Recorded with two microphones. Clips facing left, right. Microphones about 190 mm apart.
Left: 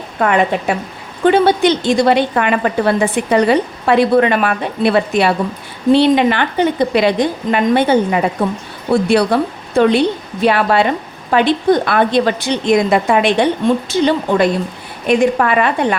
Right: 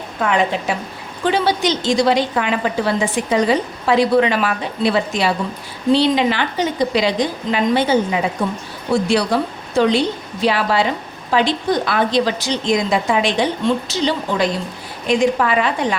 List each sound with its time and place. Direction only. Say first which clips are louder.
0.2 s a woman's voice: left 4 dB; 55° left (ahead or behind)